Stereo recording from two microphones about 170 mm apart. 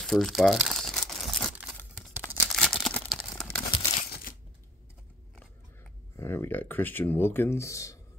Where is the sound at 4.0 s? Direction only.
55° left (ahead or behind).